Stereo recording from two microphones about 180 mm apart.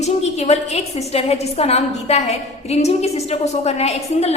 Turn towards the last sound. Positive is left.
turn(degrees=35)  # may be behind; listen again after turning